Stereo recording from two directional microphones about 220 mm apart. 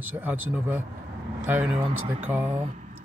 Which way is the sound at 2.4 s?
30° right (ahead or behind).